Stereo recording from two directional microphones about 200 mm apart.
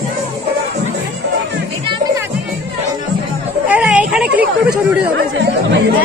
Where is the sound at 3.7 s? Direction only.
5° right (ahead or behind).